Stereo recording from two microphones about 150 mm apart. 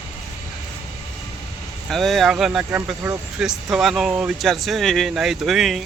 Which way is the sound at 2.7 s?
20° right (ahead or behind).